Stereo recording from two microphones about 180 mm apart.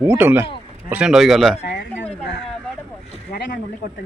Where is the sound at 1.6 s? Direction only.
75° left (ahead or behind).